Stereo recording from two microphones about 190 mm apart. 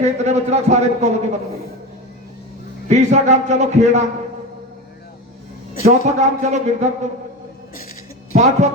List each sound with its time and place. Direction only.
0.0 s a man's voice: 35° right (ahead or behind)
2.9 s a man's voice: 35° right (ahead or behind)
5.8 s a man's voice: 35° right (ahead or behind)
8.3 s a woman's voice: 40° right (ahead or behind)